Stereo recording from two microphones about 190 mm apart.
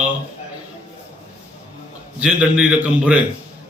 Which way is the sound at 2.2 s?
5° right (ahead or behind).